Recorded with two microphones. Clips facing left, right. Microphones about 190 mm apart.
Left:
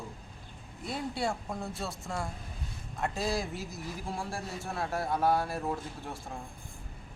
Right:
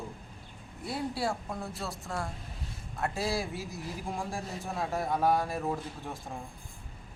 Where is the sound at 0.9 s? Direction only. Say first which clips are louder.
Right 1 dB; 5° right (ahead or behind).